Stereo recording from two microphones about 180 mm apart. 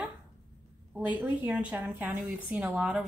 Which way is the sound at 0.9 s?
10° right (ahead or behind).